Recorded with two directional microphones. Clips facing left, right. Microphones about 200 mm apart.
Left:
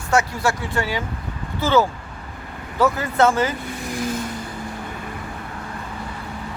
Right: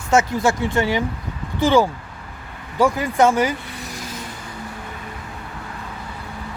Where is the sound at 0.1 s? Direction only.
20° right (ahead or behind).